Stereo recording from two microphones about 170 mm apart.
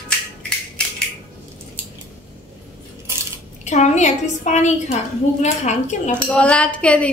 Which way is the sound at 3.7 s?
45° left (ahead or behind).